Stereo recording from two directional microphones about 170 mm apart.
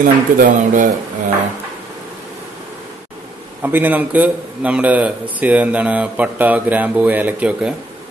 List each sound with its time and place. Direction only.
0.0 s speech: 50° right (ahead or behind)
3.6 s a man's voice: 10° right (ahead or behind)